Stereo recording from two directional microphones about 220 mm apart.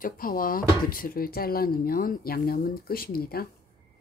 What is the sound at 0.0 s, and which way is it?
Speech, 40° left (ahead or behind).